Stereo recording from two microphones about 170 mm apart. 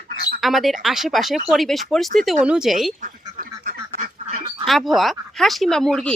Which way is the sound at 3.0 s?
50° right (ahead or behind).